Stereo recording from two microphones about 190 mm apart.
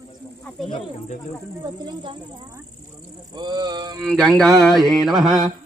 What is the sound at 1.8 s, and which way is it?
Speech, 25° right (ahead or behind).